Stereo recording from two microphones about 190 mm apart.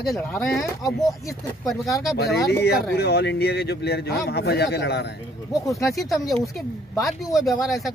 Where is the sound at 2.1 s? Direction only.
55° left (ahead or behind).